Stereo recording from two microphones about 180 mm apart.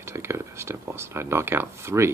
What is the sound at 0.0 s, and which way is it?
Speech, 15° right (ahead or behind).